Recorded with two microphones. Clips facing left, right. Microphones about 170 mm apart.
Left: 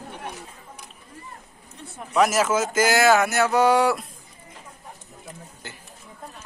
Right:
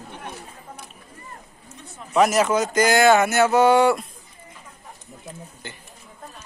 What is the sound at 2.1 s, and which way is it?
Speech, centre (ahead or behind).